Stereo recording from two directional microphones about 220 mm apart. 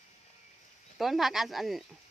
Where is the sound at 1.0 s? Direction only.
Centre (ahead or behind).